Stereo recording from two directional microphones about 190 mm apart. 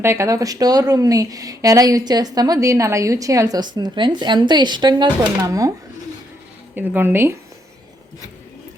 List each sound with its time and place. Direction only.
0.0 s a woman's voice: 15° right (ahead or behind)
6.7 s speech: 10° right (ahead or behind)